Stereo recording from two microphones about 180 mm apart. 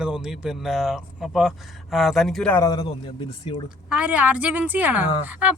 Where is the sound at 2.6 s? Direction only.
25° left (ahead or behind).